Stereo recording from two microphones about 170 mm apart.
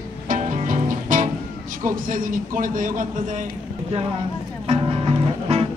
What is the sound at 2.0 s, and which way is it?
Speech, 55° right (ahead or behind).